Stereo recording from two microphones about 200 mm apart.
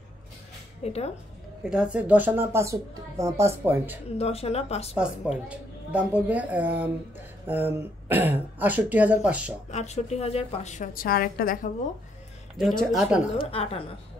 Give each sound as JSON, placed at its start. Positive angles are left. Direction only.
{"t": 0.8, "sound": "a woman's voice", "side_deg": 30}
{"t": 1.6, "sound": "speech", "side_deg": -5}
{"t": 4.2, "sound": "a woman's voice", "side_deg": 30}
{"t": 4.9, "sound": "speech", "side_deg": -5}
{"t": 9.7, "sound": "a woman's voice", "side_deg": 35}
{"t": 12.9, "sound": "a woman's voice", "side_deg": -5}
{"t": 13.4, "sound": "a woman's voice", "side_deg": 30}